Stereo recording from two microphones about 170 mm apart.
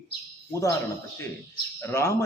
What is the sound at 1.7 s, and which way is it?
Speech, 15° left (ahead or behind).